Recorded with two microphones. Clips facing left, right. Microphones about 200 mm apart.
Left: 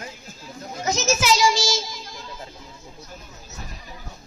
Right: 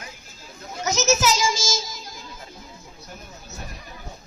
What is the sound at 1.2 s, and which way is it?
Child singing, 45° right (ahead or behind).